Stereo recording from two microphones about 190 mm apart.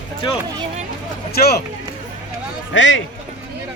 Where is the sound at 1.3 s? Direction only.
55° left (ahead or behind).